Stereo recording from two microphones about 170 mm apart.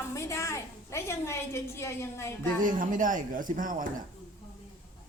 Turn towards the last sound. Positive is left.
turn(degrees=-50)  # may be behind; listen again after turning